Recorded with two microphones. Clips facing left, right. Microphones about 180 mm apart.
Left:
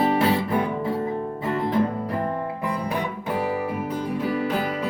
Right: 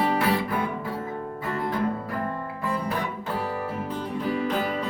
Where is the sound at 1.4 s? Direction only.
25° left (ahead or behind).